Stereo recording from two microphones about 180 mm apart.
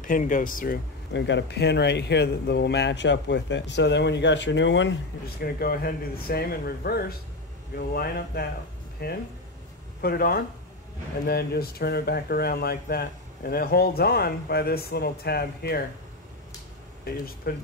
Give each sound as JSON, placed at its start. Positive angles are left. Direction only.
{"t": 0.0, "sound": "speech", "side_deg": 45}
{"t": 1.1, "sound": "speech", "side_deg": 80}
{"t": 5.4, "sound": "speech", "side_deg": 55}
{"t": 17.4, "sound": "speech", "side_deg": 55}